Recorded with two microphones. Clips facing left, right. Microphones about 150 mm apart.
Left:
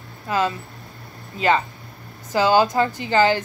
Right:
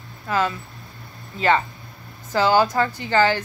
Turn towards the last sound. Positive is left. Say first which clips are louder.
# left 1 dB
turn(degrees=15)  # may be behind; listen again after turning